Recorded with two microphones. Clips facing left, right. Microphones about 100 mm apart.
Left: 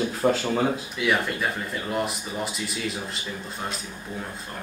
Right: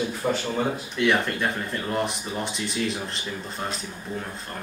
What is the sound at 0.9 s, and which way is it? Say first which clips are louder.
Speech: right 2 dB; 5° left (ahead or behind).